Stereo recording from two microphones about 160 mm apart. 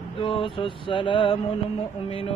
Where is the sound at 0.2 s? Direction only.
35° left (ahead or behind).